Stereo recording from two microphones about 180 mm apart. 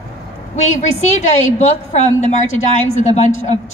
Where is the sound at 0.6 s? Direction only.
40° left (ahead or behind).